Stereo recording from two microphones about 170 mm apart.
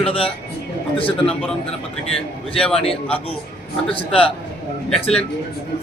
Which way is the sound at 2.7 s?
35° left (ahead or behind).